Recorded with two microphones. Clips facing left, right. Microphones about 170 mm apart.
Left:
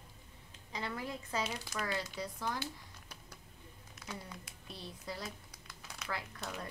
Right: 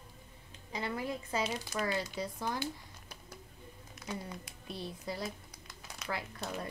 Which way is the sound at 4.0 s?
20° right (ahead or behind).